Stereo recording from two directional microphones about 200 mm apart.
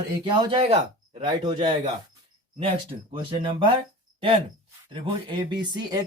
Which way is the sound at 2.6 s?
25° right (ahead or behind).